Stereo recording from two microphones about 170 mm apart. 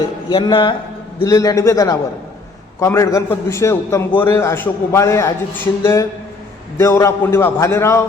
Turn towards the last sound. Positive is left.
turn(degrees=15)  # may be behind; listen again after turning